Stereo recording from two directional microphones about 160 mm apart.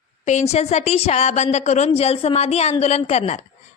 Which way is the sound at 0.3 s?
45° left (ahead or behind).